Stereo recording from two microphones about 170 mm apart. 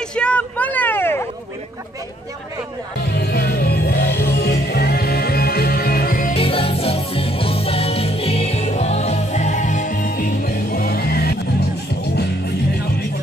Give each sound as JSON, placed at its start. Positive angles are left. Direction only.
{"t": 0.1, "sound": "vehicle", "side_deg": 5}
{"t": 3.1, "sound": "music", "side_deg": 70}
{"t": 6.3, "sound": "music", "side_deg": 35}